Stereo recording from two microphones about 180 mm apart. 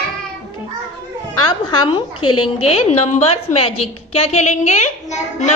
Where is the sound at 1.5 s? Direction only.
25° left (ahead or behind).